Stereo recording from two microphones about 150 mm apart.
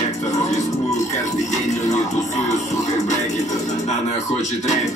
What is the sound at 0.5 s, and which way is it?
Music, 50° left (ahead or behind).